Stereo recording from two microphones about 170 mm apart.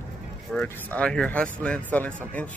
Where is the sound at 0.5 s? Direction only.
5° left (ahead or behind).